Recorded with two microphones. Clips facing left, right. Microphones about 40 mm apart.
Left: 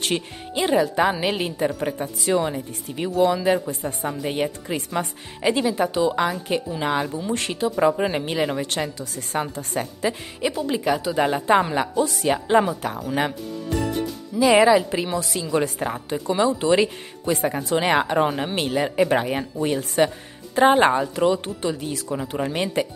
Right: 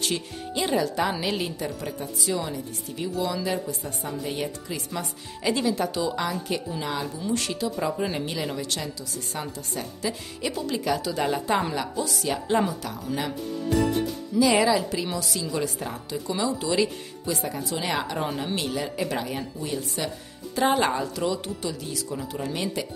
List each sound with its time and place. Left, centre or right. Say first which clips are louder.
0.6 s a woman's voice: left 5 dB; centre
7.3 s a woman's voice: left 6 dB; left
10.4 s a woman's voice: left 5 dB; left
13.7 s music: right 1 dB; centre
14.4 s a woman's voice: left 6 dB; left